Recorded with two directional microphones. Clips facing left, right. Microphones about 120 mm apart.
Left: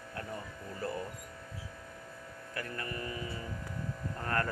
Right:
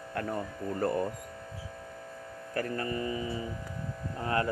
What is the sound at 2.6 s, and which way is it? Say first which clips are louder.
Speech: right 8 dB; 35° right (ahead or behind).